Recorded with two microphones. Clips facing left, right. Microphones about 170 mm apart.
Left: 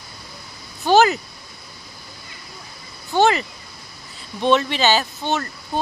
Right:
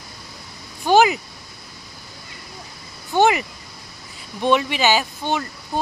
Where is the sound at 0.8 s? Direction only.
10° right (ahead or behind).